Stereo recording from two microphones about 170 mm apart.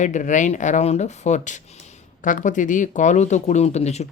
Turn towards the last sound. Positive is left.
turn(degrees=40)  # may be behind; listen again after turning